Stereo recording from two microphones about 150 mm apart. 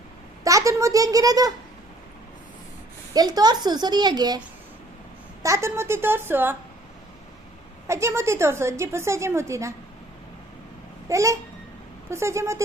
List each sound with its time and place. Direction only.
0.4 s a woman's voice: 20° right (ahead or behind)
3.1 s a woman's voice: 25° right (ahead or behind)
5.4 s a woman's voice: 20° right (ahead or behind)
7.9 s a woman's voice: 20° right (ahead or behind)
11.1 s a woman's voice: 20° right (ahead or behind)